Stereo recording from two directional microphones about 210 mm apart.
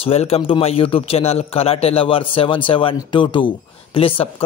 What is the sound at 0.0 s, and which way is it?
Speech, 30° left (ahead or behind).